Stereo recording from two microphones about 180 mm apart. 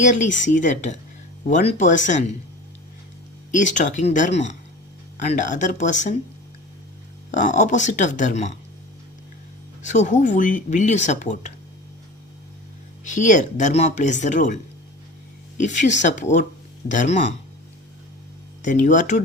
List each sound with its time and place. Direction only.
0.0 s speech: 45° left (ahead or behind)
3.5 s speech: 45° left (ahead or behind)
7.3 s speech: 40° left (ahead or behind)
9.8 s speech: 45° left (ahead or behind)
13.1 s speech: 45° left (ahead or behind)
15.6 s speech: 40° left (ahead or behind)
18.6 s speech: 45° left (ahead or behind)